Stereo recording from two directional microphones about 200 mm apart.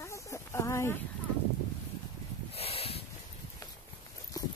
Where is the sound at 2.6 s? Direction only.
30° left (ahead or behind).